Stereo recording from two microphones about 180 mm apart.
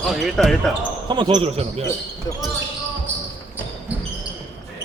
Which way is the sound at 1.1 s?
25° right (ahead or behind).